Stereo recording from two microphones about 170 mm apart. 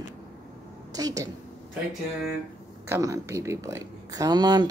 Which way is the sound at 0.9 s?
20° right (ahead or behind).